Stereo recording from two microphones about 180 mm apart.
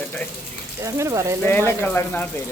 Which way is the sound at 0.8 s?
15° right (ahead or behind).